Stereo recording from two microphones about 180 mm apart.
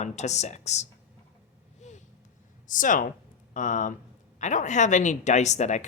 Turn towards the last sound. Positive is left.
turn(degrees=40)  # may be behind; listen again after turning